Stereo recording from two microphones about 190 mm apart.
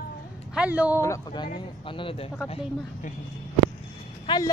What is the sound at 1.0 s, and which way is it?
Speech, 20° left (ahead or behind).